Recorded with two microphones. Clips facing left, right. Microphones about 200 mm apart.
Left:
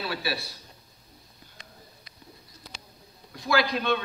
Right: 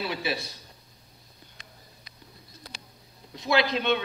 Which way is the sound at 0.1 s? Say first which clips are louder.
Right 1 dB; 20° right (ahead or behind).